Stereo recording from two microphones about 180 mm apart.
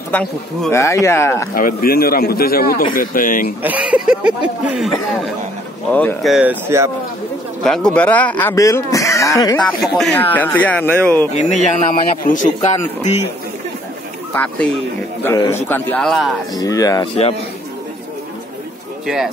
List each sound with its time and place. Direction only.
0.1 s speech: 5° left (ahead or behind)
1.5 s a man's voice: 50° left (ahead or behind)
3.6 s speech: 10° right (ahead or behind)
7.6 s speech: 5° left (ahead or behind)
9.8 s speech: centre (ahead or behind)
12.3 s speech: 45° left (ahead or behind)
14.3 s speech: 10° left (ahead or behind)
15.7 s speech: 5° left (ahead or behind)
16.5 s speech: 20° left (ahead or behind)
19.0 s speech: centre (ahead or behind)